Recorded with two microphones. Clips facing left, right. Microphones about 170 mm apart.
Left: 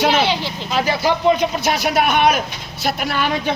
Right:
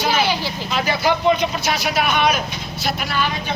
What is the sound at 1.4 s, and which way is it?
Speech, 55° left (ahead or behind).